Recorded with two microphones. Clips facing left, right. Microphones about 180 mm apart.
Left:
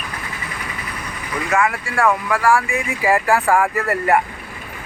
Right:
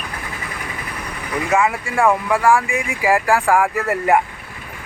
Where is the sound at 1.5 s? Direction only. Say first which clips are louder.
Right 1 dB; 20° right (ahead or behind).